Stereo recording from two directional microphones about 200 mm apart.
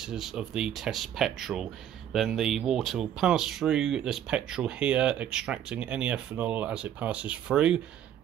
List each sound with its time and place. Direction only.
0.0 s speech: centre (ahead or behind)